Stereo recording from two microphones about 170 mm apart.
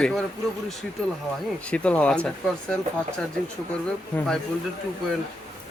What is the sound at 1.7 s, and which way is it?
Speech, 5° left (ahead or behind).